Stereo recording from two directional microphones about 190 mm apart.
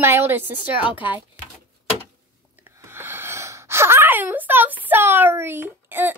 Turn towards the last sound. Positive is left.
turn(degrees=-10)  # may be behind; listen again after turning